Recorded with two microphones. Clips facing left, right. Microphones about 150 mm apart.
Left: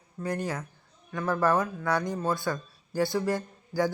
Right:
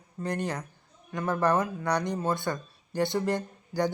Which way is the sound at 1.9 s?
20° right (ahead or behind).